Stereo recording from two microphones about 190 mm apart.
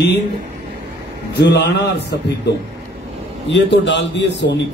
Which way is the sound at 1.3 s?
60° left (ahead or behind).